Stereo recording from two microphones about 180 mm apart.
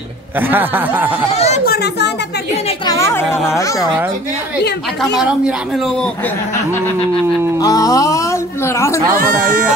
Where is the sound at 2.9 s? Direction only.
15° left (ahead or behind).